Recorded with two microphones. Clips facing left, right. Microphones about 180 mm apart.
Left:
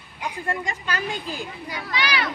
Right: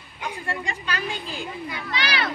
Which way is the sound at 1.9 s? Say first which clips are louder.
Left 2 dB; 30° right (ahead or behind).